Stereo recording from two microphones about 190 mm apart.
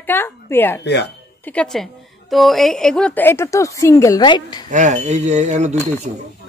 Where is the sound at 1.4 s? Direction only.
5° left (ahead or behind); by 4.6 s 25° left (ahead or behind).